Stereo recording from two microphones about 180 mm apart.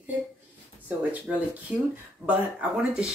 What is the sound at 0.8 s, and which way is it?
Speech, 5° right (ahead or behind).